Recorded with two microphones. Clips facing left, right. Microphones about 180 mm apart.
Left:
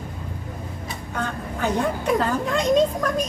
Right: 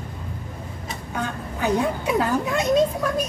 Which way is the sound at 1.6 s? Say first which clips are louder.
Right 1 dB; 10° right (ahead or behind).